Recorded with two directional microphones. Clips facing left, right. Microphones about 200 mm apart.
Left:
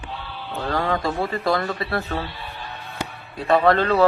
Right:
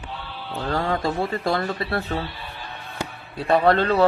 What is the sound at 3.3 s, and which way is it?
Speech, 30° right (ahead or behind).